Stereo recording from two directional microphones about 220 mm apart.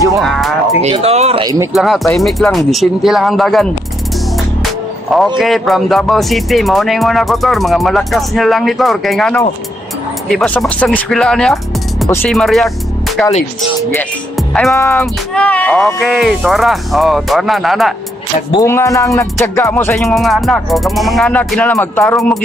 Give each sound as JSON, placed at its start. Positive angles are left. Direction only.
{"t": 0.2, "sound": "speech", "side_deg": 0}
{"t": 0.8, "sound": "speech", "side_deg": -30}
{"t": 1.7, "sound": "speech", "side_deg": 0}
{"t": 4.6, "sound": "music", "side_deg": 0}
{"t": 5.4, "sound": "speech", "side_deg": 0}
{"t": 14.7, "sound": "speech", "side_deg": 10}
{"t": 18.5, "sound": "music", "side_deg": 15}